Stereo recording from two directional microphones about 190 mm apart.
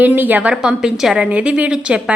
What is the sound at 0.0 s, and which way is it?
A woman's voice, 10° right (ahead or behind).